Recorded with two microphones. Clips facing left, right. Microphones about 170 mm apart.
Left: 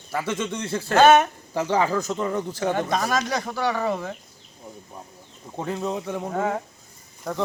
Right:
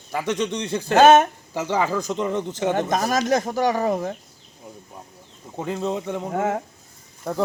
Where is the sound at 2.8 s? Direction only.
45° right (ahead or behind).